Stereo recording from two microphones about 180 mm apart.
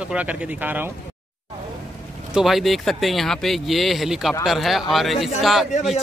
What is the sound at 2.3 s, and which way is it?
Speech, centre (ahead or behind).